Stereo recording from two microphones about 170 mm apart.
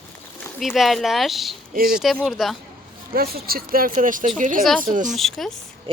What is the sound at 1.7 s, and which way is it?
Speech, 60° right (ahead or behind).